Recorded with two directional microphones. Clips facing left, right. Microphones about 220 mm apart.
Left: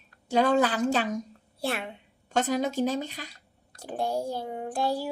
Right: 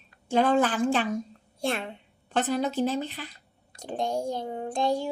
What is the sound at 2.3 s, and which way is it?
Speech, 45° left (ahead or behind).